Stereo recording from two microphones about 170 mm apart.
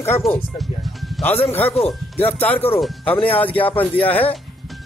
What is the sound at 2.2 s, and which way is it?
Speech, 10° left (ahead or behind).